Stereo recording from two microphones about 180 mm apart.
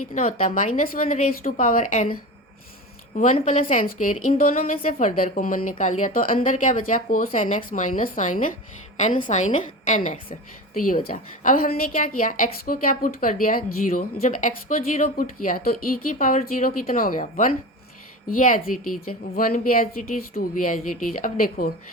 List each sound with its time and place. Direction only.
0.1 s a woman's voice: 45° left (ahead or behind)
3.2 s a woman's voice: 45° left (ahead or behind)